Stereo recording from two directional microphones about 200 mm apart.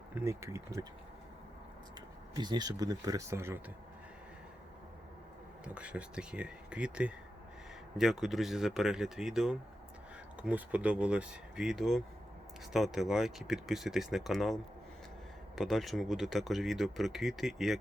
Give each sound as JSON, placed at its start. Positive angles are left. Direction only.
{"t": 0.1, "sound": "speech", "side_deg": -15}
{"t": 2.0, "sound": "speech", "side_deg": -20}
{"t": 5.6, "sound": "speech", "side_deg": -5}